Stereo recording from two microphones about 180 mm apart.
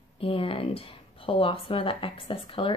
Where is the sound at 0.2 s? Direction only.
30° left (ahead or behind).